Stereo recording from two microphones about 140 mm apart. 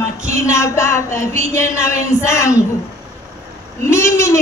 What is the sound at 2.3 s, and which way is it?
Speech, 20° left (ahead or behind).